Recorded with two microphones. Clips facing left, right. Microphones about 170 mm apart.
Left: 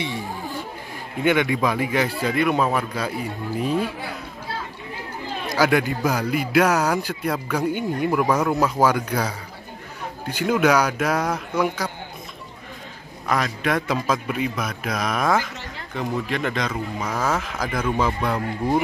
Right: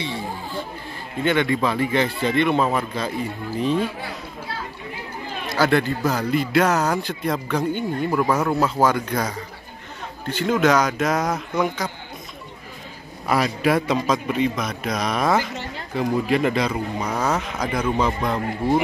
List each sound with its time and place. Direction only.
1.2 s a man's voice: 10° left (ahead or behind)
5.6 s a man's voice: 10° left (ahead or behind)
8.3 s speech: 5° right (ahead or behind)
8.5 s a man's voice: 10° left (ahead or behind)
13.3 s a man's voice: 5° right (ahead or behind)
14.0 s speech: 5° left (ahead or behind)